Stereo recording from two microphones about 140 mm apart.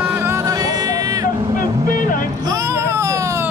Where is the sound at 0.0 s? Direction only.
15° right (ahead or behind).